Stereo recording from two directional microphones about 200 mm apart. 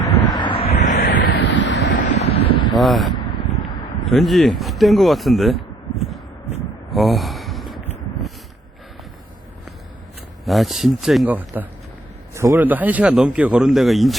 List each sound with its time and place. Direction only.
0.0 s vehicle: 20° left (ahead or behind); by 1.8 s 60° left (ahead or behind)
2.1 s wind: 30° left (ahead or behind)
2.7 s a man's voice: centre (ahead or behind)
6.9 s gasp: centre (ahead or behind)
10.4 s a man's voice: centre (ahead or behind)